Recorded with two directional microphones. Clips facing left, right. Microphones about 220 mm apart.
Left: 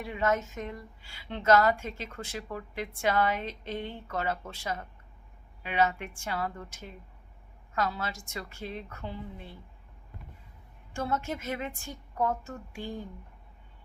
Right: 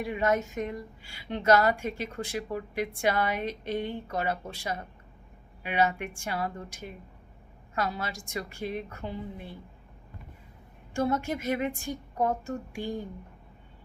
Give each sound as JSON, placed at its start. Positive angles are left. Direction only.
{"t": 0.0, "sound": "a woman's voice", "side_deg": -15}
{"t": 10.9, "sound": "a woman's voice", "side_deg": -15}